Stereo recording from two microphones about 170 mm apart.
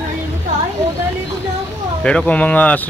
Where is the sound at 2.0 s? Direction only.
5° left (ahead or behind).